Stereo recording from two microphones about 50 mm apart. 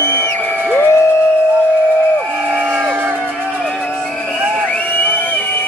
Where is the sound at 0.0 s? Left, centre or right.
Right.